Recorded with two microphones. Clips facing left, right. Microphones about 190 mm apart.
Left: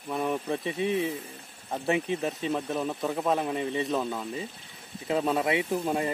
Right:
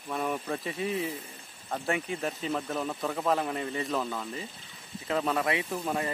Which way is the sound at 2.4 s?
15° left (ahead or behind).